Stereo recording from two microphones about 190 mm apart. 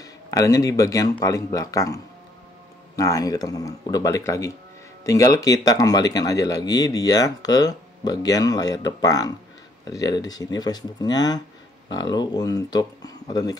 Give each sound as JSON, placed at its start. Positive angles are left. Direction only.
{"t": 0.0, "sound": "a man's voice", "side_deg": 20}
{"t": 3.0, "sound": "speech", "side_deg": 20}